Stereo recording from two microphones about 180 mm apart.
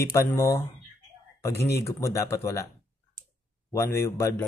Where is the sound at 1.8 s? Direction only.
15° left (ahead or behind).